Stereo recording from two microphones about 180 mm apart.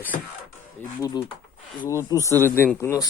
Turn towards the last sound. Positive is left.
turn(degrees=15)  # may be behind; listen again after turning